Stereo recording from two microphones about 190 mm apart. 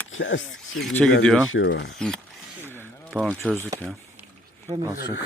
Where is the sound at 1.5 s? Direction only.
65° left (ahead or behind).